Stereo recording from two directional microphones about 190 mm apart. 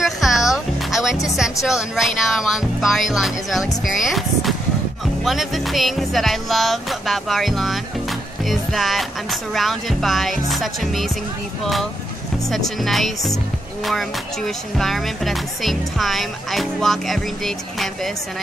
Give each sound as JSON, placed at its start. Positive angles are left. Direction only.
{"t": 0.0, "sound": "music", "side_deg": 0}
{"t": 1.2, "sound": "speech", "side_deg": 0}